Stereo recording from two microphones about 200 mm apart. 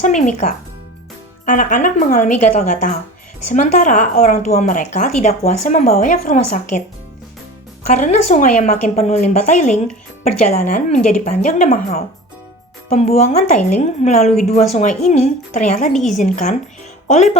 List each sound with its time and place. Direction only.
0.0 s a woman's voice: 35° left (ahead or behind)
7.9 s a woman's voice: 35° left (ahead or behind)